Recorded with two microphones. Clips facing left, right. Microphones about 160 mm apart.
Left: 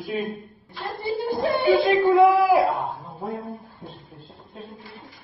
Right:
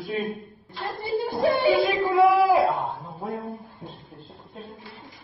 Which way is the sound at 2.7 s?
Centre (ahead or behind).